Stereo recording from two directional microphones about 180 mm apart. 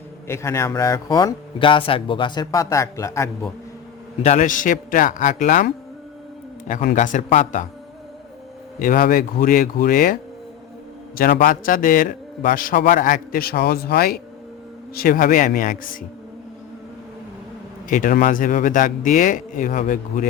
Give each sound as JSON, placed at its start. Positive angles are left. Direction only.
{"t": 0.3, "sound": "speech", "side_deg": 15}
{"t": 4.2, "sound": "a man's voice", "side_deg": 40}
{"t": 8.8, "sound": "a man's voice", "side_deg": 50}
{"t": 11.2, "sound": "a man's voice", "side_deg": 55}
{"t": 17.8, "sound": "a man's voice", "side_deg": 50}